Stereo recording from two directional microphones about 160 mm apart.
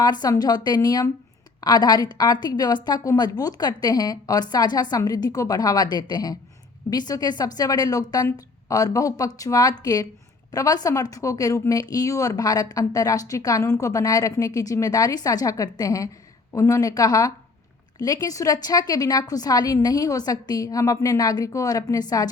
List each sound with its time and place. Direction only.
0.0 s speech: 25° left (ahead or behind)